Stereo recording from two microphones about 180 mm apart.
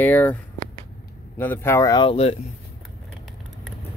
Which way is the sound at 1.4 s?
10° left (ahead or behind).